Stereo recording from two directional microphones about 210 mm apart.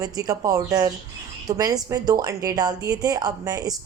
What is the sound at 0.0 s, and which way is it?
Speech, 15° right (ahead or behind).